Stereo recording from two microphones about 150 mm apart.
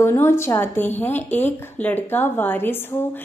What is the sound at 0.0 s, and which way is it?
Speech, 15° left (ahead or behind).